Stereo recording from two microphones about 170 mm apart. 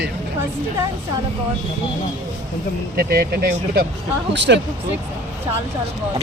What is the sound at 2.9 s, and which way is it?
Speech, 65° right (ahead or behind).